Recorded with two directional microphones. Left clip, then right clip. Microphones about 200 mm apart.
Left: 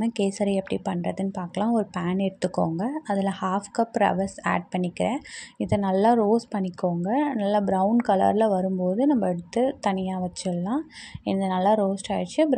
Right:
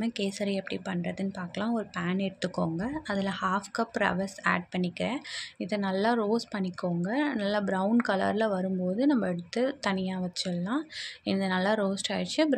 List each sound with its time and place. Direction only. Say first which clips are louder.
0.0 s speech: left 6 dB; 25° left (ahead or behind)